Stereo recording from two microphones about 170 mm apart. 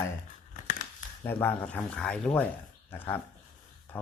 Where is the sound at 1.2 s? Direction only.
15° left (ahead or behind).